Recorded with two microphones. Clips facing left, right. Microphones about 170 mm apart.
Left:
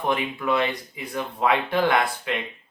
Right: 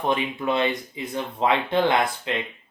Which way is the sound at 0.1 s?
20° right (ahead or behind).